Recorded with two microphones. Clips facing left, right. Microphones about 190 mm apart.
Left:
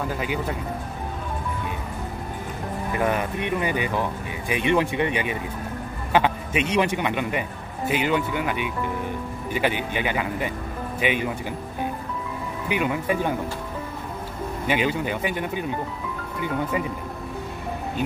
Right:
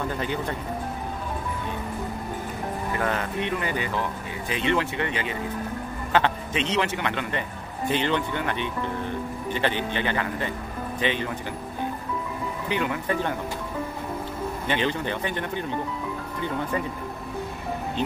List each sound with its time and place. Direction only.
0.1 s speech: 5° left (ahead or behind)
3.0 s a man's voice: 15° left (ahead or behind)
12.6 s speech: 15° left (ahead or behind)
14.7 s speech: 10° left (ahead or behind)